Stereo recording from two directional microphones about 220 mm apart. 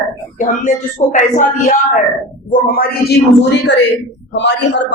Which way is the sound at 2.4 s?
40° left (ahead or behind).